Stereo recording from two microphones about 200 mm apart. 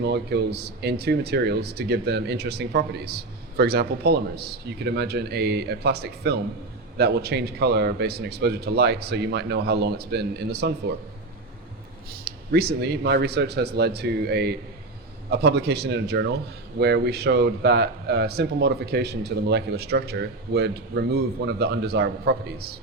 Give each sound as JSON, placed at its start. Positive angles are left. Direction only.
{"t": 0.0, "sound": "speech", "side_deg": -55}
{"t": 12.2, "sound": "speech", "side_deg": -50}